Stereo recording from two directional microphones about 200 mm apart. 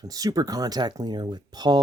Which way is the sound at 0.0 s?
20° right (ahead or behind).